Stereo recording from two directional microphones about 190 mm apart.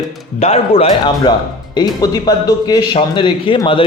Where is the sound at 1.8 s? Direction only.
20° left (ahead or behind).